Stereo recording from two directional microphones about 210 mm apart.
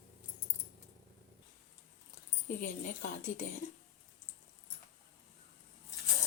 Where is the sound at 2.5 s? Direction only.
40° left (ahead or behind).